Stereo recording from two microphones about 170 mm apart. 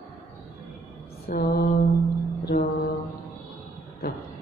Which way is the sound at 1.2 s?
65° left (ahead or behind).